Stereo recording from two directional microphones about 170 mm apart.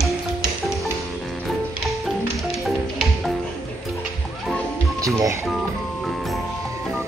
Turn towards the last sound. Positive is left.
turn(degrees=-15)  # may be behind; listen again after turning